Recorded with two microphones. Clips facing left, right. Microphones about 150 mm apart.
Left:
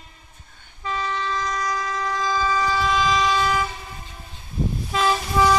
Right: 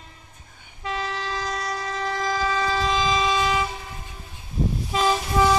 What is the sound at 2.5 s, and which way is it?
Vehicle, 30° right (ahead or behind).